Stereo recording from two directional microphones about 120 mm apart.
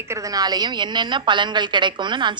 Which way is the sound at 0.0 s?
25° right (ahead or behind).